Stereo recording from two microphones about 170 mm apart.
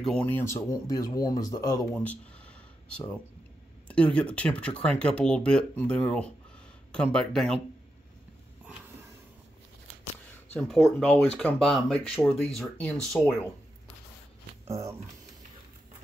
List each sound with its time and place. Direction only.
0.0 s speech: 5° left (ahead or behind)
3.8 s speech: 5° left (ahead or behind)
10.5 s speech: centre (ahead or behind)
14.7 s speech: 15° right (ahead or behind)